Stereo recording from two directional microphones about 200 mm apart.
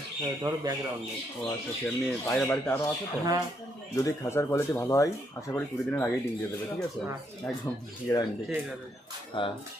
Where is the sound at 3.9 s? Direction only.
15° left (ahead or behind).